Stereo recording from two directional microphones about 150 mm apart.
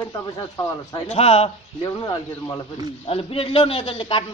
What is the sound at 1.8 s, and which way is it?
Speech, 25° left (ahead or behind).